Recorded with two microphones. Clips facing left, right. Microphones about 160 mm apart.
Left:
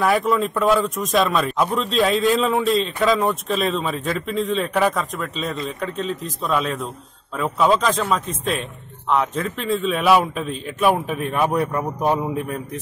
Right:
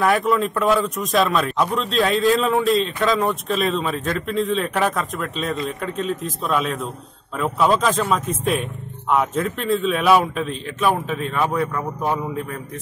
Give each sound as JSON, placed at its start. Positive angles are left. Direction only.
{"t": 0.0, "sound": "a man's voice", "side_deg": 0}